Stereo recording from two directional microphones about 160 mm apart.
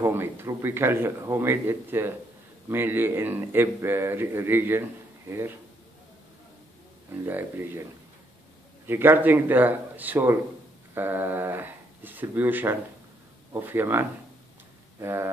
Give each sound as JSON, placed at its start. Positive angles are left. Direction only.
{"t": 0.0, "sound": "speech", "side_deg": -15}
{"t": 7.2, "sound": "speech", "side_deg": -15}
{"t": 8.8, "sound": "speech", "side_deg": -15}